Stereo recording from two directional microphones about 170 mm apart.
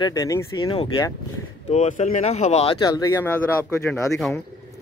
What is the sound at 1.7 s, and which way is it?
Speech, 45° left (ahead or behind).